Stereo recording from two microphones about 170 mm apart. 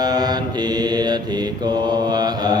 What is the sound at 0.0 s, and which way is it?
Mantra, 25° right (ahead or behind).